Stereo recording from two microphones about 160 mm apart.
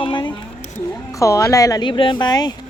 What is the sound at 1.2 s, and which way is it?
A woman's voice, 20° left (ahead or behind).